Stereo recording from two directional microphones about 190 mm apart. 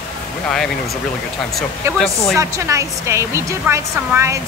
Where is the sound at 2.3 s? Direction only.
15° right (ahead or behind).